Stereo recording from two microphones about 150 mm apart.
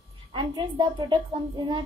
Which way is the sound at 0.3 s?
30° right (ahead or behind).